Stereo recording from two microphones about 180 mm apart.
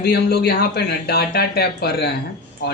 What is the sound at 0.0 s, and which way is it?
Speech, 65° left (ahead or behind).